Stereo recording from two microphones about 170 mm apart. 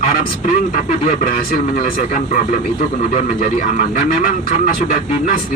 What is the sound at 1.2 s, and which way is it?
Speech, 55° left (ahead or behind).